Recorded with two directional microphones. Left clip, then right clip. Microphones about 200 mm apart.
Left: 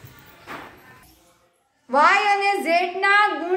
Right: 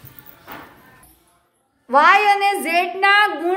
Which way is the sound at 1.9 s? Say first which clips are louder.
Right 4 dB; 40° right (ahead or behind).